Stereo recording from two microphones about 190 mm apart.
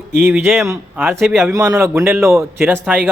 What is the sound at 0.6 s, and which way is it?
A man's voice, 15° right (ahead or behind).